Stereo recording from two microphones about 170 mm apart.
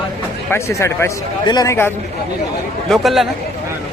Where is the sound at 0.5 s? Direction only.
15° left (ahead or behind).